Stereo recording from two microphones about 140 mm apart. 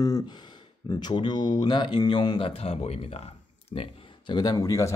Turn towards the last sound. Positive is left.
turn(degrees=20)  # may be behind; listen again after turning